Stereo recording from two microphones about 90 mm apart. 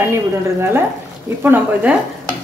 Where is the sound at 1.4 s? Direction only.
20° right (ahead or behind).